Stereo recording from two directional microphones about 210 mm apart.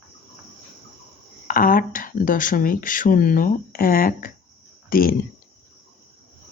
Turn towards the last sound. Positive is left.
turn(degrees=45)  # may be behind; listen again after turning